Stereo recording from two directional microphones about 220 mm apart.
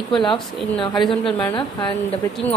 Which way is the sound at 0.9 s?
Centre (ahead or behind).